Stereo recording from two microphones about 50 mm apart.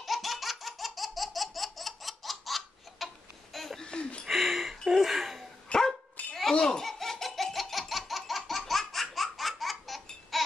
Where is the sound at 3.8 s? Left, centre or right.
Centre.